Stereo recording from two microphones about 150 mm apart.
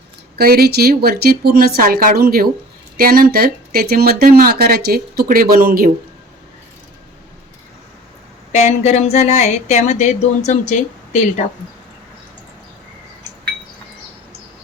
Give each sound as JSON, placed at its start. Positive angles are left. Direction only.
{"t": 0.3, "sound": "speech", "side_deg": -90}
{"t": 3.0, "sound": "speech", "side_deg": -75}
{"t": 8.5, "sound": "speech", "side_deg": 50}